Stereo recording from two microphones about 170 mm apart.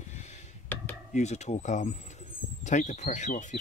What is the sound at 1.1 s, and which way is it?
Speech, 40° left (ahead or behind).